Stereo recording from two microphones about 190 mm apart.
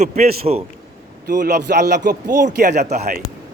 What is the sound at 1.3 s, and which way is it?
Speech, 55° right (ahead or behind).